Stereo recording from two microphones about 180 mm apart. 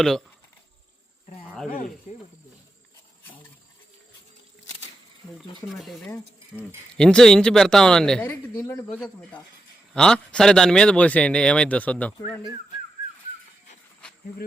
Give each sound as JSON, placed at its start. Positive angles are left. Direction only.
{"t": 1.5, "sound": "cricket", "side_deg": 0}
{"t": 2.1, "sound": "snake", "side_deg": 45}
{"t": 5.4, "sound": "speech", "side_deg": 0}
{"t": 8.5, "sound": "a man's voice", "side_deg": 15}
{"t": 9.9, "sound": "speech", "side_deg": 5}
{"t": 14.0, "sound": "a sound", "side_deg": 5}